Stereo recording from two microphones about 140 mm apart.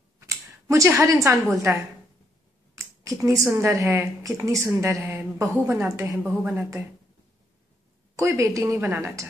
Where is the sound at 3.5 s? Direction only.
20° right (ahead or behind).